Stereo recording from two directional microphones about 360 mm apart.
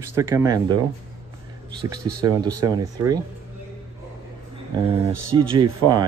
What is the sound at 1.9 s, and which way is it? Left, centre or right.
Speech, right.